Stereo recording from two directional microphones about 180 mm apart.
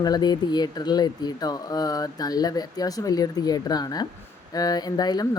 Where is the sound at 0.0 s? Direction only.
20° left (ahead or behind).